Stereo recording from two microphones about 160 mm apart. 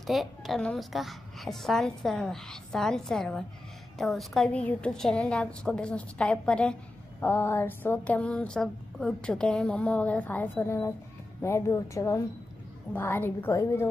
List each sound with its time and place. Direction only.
0.0 s a woman's voice: centre (ahead or behind); by 13.8 s 20° left (ahead or behind)